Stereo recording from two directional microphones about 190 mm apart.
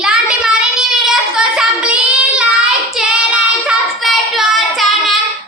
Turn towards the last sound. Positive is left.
turn(degrees=0)  # may be behind; listen again after turning